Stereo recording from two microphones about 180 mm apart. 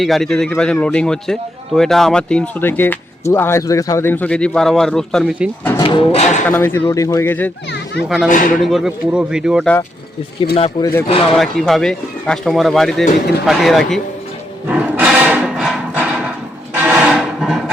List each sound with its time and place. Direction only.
0.0 s a man's voice: centre (ahead or behind)
5.8 s music: 30° left (ahead or behind)
6.5 s speech: 10° left (ahead or behind)
8.3 s speech: 45° left (ahead or behind)
8.6 s a man's voice: centre (ahead or behind)
10.5 s speech: 30° left (ahead or behind)
11.0 s music: 35° left (ahead or behind)
11.3 s a man's voice: centre (ahead or behind)
14.7 s roar: 5° right (ahead or behind)
16.7 s music: 5° right (ahead or behind)